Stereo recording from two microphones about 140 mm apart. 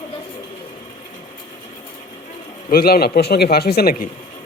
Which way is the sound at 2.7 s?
90° left.